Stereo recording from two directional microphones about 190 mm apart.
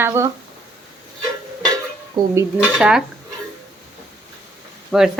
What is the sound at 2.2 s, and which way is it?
Dishes, 20° right (ahead or behind).